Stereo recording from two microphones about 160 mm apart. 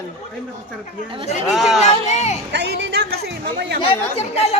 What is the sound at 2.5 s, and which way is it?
Speech, 90° right.